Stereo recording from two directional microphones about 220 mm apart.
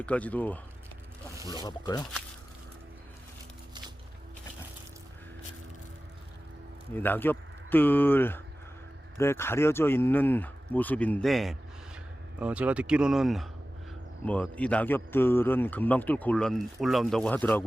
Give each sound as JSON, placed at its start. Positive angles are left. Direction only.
{"t": 0.0, "sound": "speech", "side_deg": 5}
{"t": 1.5, "sound": "speech", "side_deg": 20}
{"t": 6.9, "sound": "speech", "side_deg": 10}